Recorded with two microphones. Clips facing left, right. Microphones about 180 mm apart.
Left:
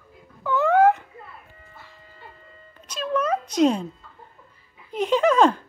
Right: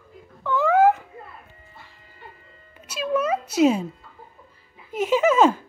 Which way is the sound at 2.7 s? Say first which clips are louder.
Right 1 dB; 10° right (ahead or behind).